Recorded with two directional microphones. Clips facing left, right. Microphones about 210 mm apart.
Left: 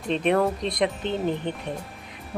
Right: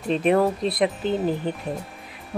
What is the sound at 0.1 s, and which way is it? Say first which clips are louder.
Speech: right 2 dB; 5° right (ahead or behind).